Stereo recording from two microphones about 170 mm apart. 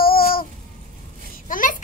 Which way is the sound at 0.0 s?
60° left (ahead or behind).